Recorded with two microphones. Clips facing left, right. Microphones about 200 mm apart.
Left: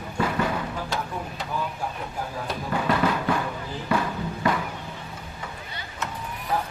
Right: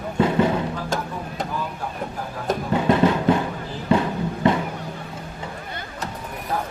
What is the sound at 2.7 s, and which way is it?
Music, 25° right (ahead or behind).